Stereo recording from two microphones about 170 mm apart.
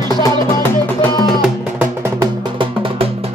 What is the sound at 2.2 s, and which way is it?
Music, 30° right (ahead or behind).